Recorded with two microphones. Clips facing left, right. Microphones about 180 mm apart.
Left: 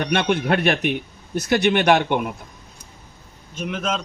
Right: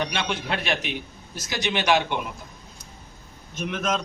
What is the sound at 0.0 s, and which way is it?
A man's voice, 60° left (ahead or behind).